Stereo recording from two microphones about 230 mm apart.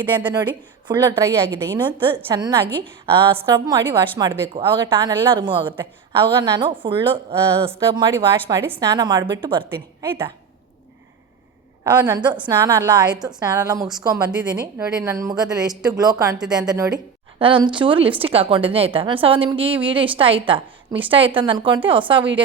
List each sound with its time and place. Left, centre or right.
0.0 s a woman's voice: right
7.7 s a woman's voice: centre
11.8 s a woman's voice: centre